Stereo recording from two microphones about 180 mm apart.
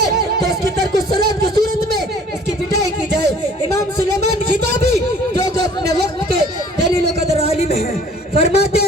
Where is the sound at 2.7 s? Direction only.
65° right (ahead or behind).